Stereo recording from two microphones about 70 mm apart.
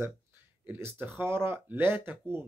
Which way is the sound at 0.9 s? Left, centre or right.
Right.